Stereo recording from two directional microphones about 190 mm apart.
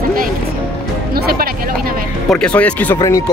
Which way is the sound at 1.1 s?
50° right (ahead or behind).